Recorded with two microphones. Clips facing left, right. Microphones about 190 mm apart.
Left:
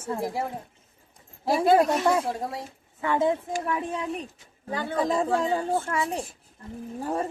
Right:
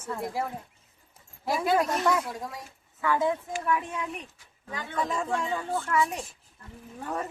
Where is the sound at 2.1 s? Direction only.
30° left (ahead or behind).